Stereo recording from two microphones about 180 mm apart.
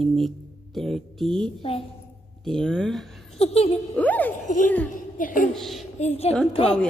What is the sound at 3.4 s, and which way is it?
Speech, 35° left (ahead or behind).